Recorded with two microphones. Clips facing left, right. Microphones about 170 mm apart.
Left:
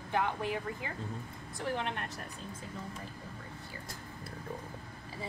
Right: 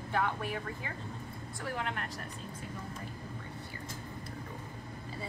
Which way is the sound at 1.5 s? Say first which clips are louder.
Left 2 dB; 25° left (ahead or behind).